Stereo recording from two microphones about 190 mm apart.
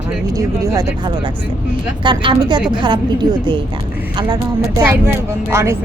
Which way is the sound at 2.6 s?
5° right (ahead or behind).